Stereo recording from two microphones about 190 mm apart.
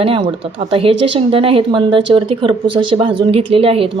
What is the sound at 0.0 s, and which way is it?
Speech, 30° right (ahead or behind).